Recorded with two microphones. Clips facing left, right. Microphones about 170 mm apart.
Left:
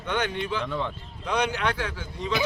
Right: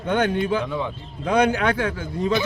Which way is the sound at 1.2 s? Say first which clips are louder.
Right 7 dB; 55° right (ahead or behind).